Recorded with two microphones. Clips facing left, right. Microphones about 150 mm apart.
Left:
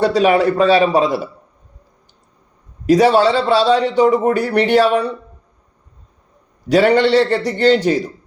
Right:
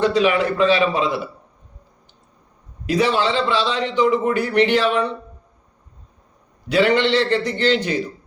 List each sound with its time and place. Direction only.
0.2 s a man's voice: 40° left (ahead or behind)
2.8 s speech: 45° left (ahead or behind)
6.7 s speech: 40° left (ahead or behind)